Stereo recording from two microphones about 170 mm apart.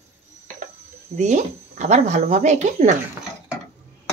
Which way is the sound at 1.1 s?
45° right (ahead or behind).